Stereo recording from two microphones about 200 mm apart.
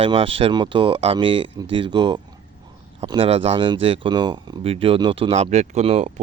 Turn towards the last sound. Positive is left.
turn(degrees=-30)  # may be behind; listen again after turning